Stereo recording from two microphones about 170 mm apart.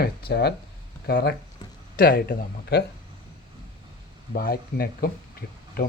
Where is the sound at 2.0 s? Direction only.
60° left (ahead or behind).